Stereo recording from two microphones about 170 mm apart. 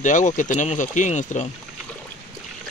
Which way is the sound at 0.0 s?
45° left (ahead or behind).